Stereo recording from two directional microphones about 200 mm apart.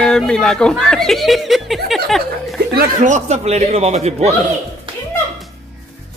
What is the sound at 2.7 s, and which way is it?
Speech, 45° right (ahead or behind).